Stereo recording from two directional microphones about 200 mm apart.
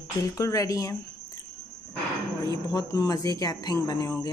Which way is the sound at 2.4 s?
15° left (ahead or behind).